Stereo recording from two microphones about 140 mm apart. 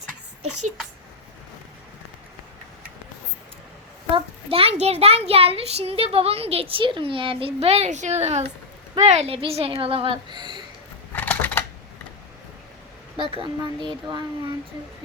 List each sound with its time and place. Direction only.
4.1 s a child's voice: 40° right (ahead or behind)
11.1 s typewriter: 10° left (ahead or behind)
13.1 s a woman's voice: 40° right (ahead or behind)